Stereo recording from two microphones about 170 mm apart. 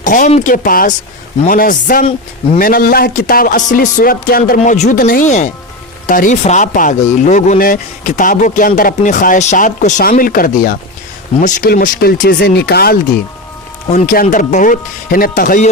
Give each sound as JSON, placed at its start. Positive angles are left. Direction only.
{"t": 0.0, "sound": "speech", "side_deg": 50}
{"t": 13.9, "sound": "speech", "side_deg": 50}